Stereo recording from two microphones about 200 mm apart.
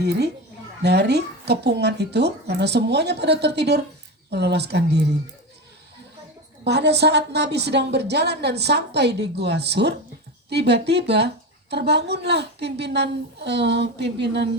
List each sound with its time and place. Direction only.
0.0 s a woman's voice: 55° right (ahead or behind)
6.7 s a woman's voice: 55° right (ahead or behind)